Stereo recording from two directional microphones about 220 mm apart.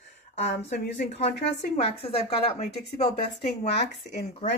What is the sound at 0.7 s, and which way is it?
A woman's voice, 35° left (ahead or behind).